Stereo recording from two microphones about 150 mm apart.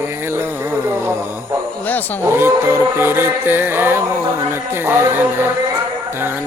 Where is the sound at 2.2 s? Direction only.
15° right (ahead or behind).